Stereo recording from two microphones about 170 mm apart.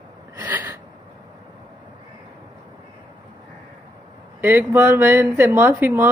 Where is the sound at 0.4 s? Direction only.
15° right (ahead or behind).